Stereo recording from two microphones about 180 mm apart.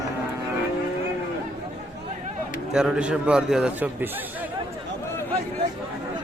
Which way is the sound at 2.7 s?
5° right (ahead or behind).